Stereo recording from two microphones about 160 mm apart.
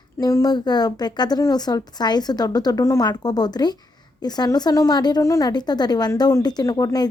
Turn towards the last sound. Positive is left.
turn(degrees=25)  # may be behind; listen again after turning